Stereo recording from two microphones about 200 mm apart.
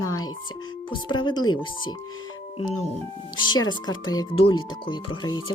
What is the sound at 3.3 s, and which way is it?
Speech, 25° left (ahead or behind).